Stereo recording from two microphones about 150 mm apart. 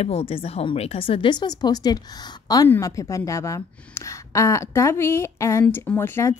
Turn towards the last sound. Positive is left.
turn(degrees=15)  # may be behind; listen again after turning